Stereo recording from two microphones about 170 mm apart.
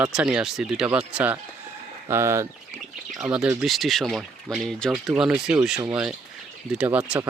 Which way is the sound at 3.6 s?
Centre (ahead or behind).